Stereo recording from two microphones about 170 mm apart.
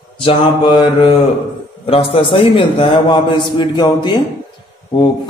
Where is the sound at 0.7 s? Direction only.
30° left (ahead or behind).